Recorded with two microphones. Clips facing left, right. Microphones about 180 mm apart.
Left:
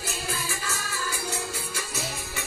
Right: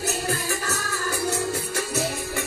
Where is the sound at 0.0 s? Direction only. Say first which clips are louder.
Right 7 dB; 70° right (ahead or behind).